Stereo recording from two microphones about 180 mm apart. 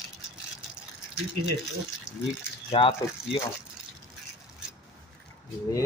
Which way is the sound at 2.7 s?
30° left (ahead or behind).